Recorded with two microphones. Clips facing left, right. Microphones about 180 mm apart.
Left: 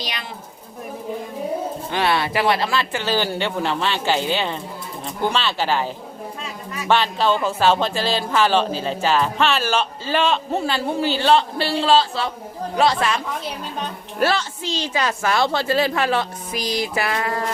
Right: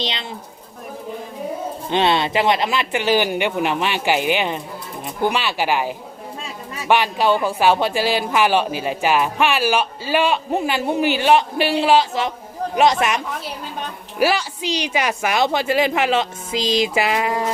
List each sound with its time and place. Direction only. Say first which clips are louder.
0.0 s speech: right 4 dB; 25° right (ahead or behind)
1.9 s speech: right 4 dB; 20° right (ahead or behind)